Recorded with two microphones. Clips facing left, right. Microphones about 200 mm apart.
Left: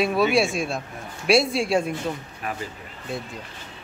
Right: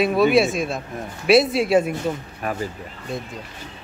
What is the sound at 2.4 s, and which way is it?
Speech, 45° right (ahead or behind).